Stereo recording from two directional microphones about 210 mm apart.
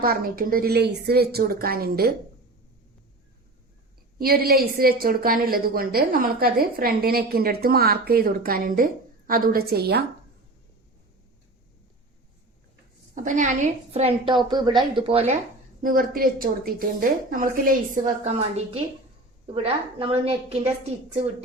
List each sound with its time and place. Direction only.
0.0 s a woman's voice: 45° right (ahead or behind)
4.2 s a woman's voice: 45° right (ahead or behind)
13.1 s a woman's voice: 35° right (ahead or behind)
15.8 s a woman's voice: 40° right (ahead or behind)